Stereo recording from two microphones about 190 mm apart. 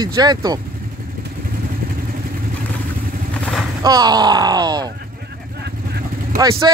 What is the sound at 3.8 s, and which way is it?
Speech, 20° right (ahead or behind).